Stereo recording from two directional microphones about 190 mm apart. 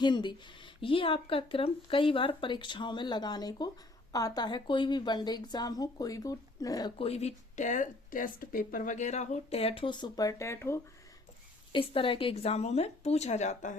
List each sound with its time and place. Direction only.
0.0 s speech: 25° left (ahead or behind)
11.7 s speech: 30° left (ahead or behind)